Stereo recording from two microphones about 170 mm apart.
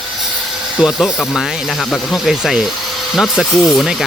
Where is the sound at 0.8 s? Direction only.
5° right (ahead or behind).